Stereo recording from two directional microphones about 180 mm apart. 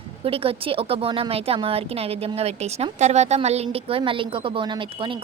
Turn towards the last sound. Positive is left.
turn(degrees=-25)  # may be behind; listen again after turning